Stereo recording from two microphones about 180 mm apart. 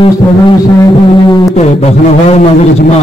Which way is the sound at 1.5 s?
35° left (ahead or behind).